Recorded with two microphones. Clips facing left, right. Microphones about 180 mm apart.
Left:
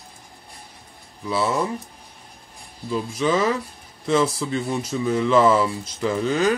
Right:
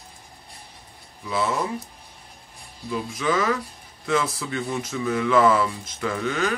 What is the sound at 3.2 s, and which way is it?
Speech, 25° left (ahead or behind).